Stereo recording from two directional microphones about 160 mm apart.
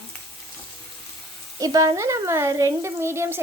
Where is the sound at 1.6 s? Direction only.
25° right (ahead or behind).